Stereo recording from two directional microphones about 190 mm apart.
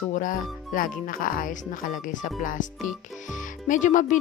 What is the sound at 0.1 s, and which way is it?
Speech, 45° left (ahead or behind).